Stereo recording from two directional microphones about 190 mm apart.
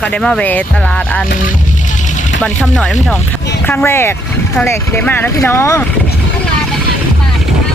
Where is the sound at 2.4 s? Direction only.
5° left (ahead or behind).